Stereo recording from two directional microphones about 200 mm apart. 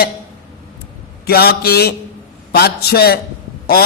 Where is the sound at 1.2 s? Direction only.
50° left (ahead or behind).